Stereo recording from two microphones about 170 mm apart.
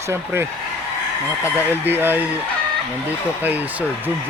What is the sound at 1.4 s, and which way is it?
Speech, 10° right (ahead or behind).